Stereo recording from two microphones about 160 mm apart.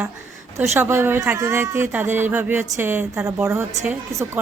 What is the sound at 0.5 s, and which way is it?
Speech, 15° right (ahead or behind).